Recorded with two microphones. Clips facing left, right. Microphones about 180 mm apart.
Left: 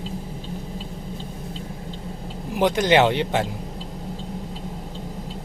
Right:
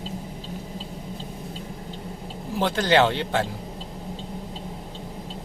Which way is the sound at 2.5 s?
15° left (ahead or behind).